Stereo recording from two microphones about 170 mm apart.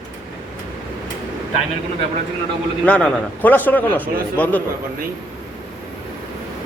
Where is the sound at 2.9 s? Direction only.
5° left (ahead or behind).